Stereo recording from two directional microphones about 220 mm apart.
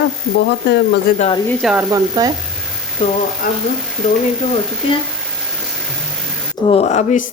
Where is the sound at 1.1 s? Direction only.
40° left (ahead or behind).